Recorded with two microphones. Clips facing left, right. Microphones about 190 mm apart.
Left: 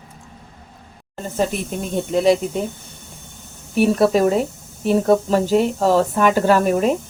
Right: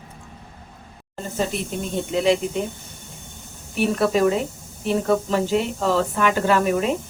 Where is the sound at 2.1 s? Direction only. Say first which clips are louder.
Left 4 dB; 40° left (ahead or behind).